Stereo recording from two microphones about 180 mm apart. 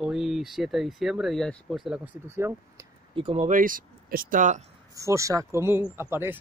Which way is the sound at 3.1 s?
30° right (ahead or behind).